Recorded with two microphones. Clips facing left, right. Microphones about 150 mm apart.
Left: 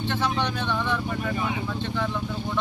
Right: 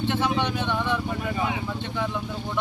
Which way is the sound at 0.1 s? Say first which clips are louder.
Even; 10° right (ahead or behind).